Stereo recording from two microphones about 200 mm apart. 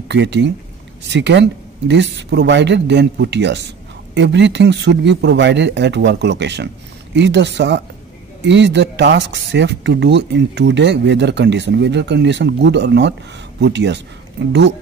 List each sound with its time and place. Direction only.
0.1 s speech: 60° right (ahead or behind)